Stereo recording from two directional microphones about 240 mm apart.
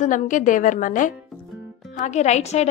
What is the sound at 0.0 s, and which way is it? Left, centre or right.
A woman's voice, left.